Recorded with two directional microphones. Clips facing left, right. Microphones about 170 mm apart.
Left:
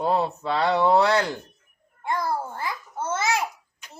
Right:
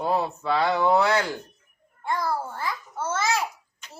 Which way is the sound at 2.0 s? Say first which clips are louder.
Even; 20° left (ahead or behind).